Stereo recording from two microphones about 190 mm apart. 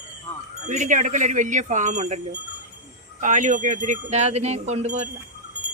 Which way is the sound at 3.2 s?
40° right (ahead or behind).